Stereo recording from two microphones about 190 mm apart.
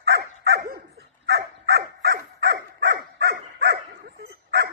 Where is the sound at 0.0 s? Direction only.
60° right (ahead or behind).